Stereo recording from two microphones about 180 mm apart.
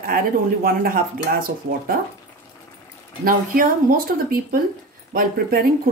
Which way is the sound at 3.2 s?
50° right (ahead or behind).